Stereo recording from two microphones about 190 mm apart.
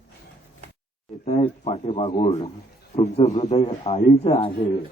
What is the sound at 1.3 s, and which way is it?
A man's voice, 35° left (ahead or behind).